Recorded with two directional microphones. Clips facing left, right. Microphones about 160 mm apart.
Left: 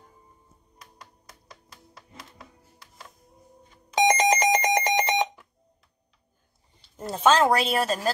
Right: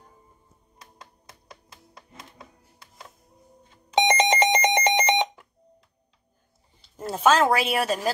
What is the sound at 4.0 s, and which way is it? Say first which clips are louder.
Alarm: even; 25° right (ahead or behind).